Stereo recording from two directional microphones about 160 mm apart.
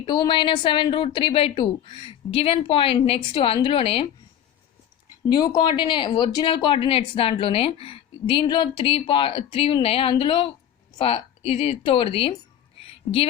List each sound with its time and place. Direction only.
0.1 s speech: 30° left (ahead or behind)
5.3 s speech: 25° left (ahead or behind)
12.8 s a sound: 35° left (ahead or behind)